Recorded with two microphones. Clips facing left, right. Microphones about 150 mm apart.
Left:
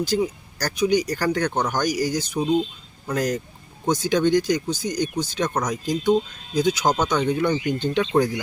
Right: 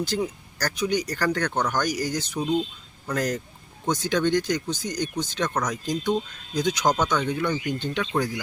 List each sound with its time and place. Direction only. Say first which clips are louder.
0.0 s speech: left 4 dB; 10° left (ahead or behind)
7.2 s speech: left 4 dB; 25° left (ahead or behind)